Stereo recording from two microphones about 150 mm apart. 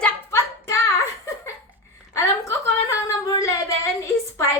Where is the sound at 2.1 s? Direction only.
20° left (ahead or behind).